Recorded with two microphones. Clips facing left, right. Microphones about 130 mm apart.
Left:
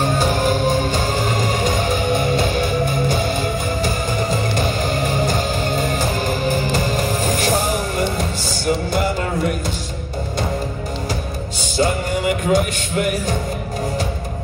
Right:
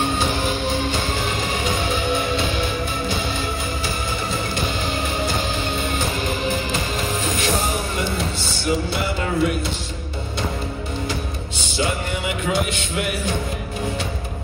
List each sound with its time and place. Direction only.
0.0 s music: 45° left (ahead or behind)
11.7 s music: 45° left (ahead or behind)